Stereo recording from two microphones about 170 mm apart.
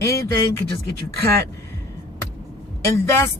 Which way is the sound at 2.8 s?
15° left (ahead or behind).